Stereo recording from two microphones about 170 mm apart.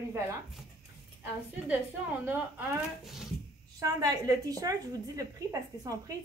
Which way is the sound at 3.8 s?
20° right (ahead or behind).